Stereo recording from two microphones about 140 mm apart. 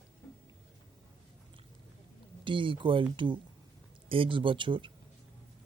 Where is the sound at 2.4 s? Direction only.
35° right (ahead or behind).